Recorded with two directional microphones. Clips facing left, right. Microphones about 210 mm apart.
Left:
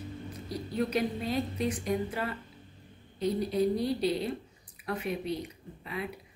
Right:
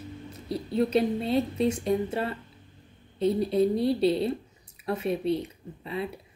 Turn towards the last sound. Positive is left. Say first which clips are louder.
# right 5 dB
turn(degrees=-30)  # may be behind; listen again after turning